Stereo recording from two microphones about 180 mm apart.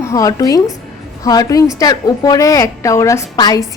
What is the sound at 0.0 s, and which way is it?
A woman's voice, 15° left (ahead or behind).